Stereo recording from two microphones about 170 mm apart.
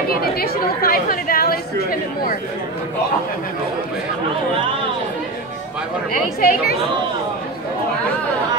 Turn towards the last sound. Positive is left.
turn(degrees=60)  # may be behind; listen again after turning